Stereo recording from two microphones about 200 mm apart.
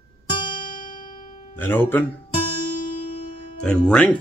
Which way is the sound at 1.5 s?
10° left (ahead or behind).